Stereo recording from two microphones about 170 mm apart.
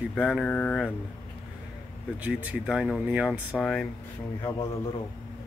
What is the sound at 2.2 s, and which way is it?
Speech, 10° right (ahead or behind).